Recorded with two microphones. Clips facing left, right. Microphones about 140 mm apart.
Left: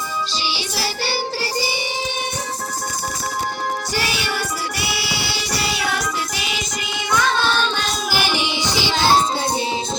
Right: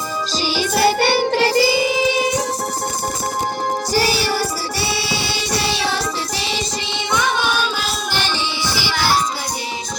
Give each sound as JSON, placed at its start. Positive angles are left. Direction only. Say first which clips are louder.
{"t": 0.4, "sound": "music", "louder": "right 9 dB", "side_deg": -50}
{"t": 3.9, "sound": "music", "louder": "right 6 dB", "side_deg": -40}
{"t": 7.1, "sound": "child singing", "louder": "even", "side_deg": -15}
{"t": 8.1, "sound": "music", "louder": "left 3 dB", "side_deg": 10}